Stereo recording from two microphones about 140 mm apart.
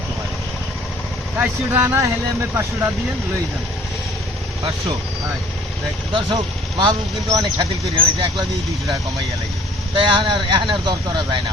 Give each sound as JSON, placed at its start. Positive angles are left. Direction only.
{"t": 1.4, "sound": "speech", "side_deg": -15}
{"t": 6.1, "sound": "speech", "side_deg": -35}
{"t": 9.9, "sound": "speech", "side_deg": -35}